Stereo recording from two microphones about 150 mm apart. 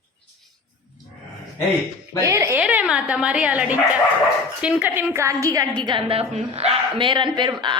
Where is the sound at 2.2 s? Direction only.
20° right (ahead or behind).